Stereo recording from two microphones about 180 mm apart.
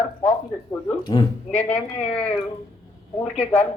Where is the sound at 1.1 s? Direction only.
25° left (ahead or behind).